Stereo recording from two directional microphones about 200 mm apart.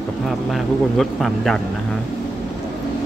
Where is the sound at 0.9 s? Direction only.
Centre (ahead or behind).